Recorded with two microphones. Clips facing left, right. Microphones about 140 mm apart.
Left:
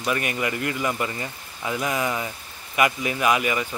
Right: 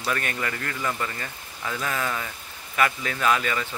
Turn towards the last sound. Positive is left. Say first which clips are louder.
# left 2 dB
turn(degrees=15)  # may be behind; listen again after turning